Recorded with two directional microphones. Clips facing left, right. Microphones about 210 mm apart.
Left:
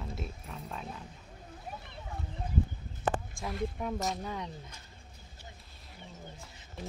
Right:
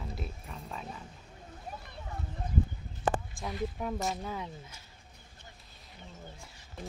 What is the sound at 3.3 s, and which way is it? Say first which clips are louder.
Speech: even; centre (ahead or behind).